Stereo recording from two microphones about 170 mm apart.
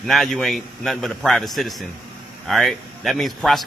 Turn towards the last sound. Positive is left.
turn(degrees=0)  # may be behind; listen again after turning